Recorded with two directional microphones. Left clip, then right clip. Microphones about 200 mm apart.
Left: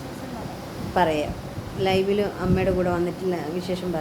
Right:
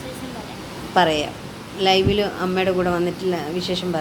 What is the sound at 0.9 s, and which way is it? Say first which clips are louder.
Speech: right 4 dB; 10° right (ahead or behind).